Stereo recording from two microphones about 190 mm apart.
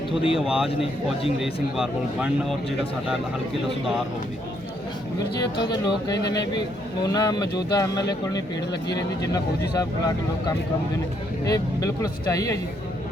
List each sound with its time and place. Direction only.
0.3 s speech: 5° right (ahead or behind)
5.4 s speech: 20° left (ahead or behind)